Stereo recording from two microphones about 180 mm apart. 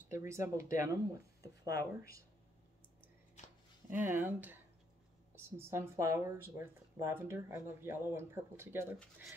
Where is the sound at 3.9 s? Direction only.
10° right (ahead or behind).